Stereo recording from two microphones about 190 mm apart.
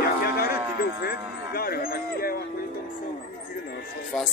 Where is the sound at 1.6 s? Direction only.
50° left (ahead or behind).